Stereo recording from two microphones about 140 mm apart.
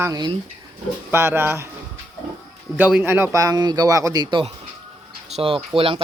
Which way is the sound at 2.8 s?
10° right (ahead or behind).